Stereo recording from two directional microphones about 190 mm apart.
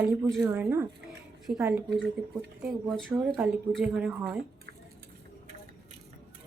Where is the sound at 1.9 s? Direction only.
65° right (ahead or behind).